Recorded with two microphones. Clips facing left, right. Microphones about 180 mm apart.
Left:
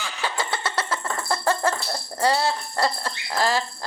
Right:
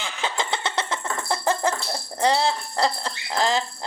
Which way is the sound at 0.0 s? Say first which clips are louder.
Even; 20° right (ahead or behind).